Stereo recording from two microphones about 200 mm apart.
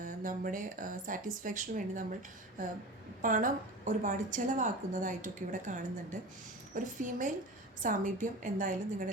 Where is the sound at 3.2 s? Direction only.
40° right (ahead or behind).